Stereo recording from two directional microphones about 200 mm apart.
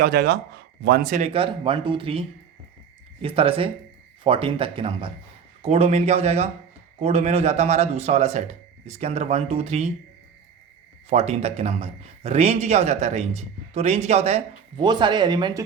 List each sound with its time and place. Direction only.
0.0 s a man's voice: 50° right (ahead or behind); by 9.9 s 30° right (ahead or behind)
11.1 s a man's voice: 30° right (ahead or behind)
14.8 s speech: 20° right (ahead or behind)